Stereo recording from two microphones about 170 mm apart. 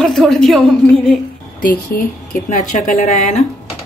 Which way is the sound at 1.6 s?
55° left (ahead or behind).